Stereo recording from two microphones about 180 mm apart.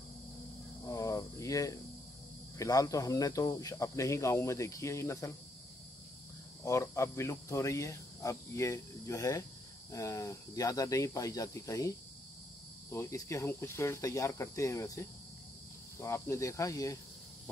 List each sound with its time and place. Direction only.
0.8 s cricket: 20° left (ahead or behind)
2.5 s speech: 20° left (ahead or behind)
6.6 s speech: 15° left (ahead or behind)
12.9 s speech: 15° left (ahead or behind)